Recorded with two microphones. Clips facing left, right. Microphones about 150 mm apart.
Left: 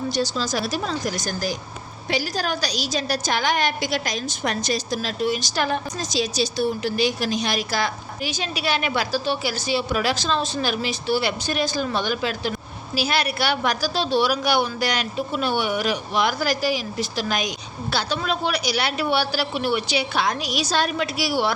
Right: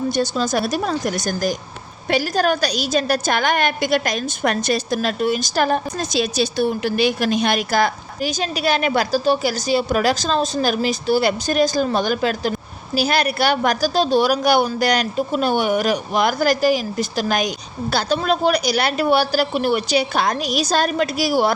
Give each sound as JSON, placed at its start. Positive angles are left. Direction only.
{"t": 0.1, "sound": "a woman's voice", "side_deg": -50}
{"t": 6.0, "sound": "a woman's voice", "side_deg": -60}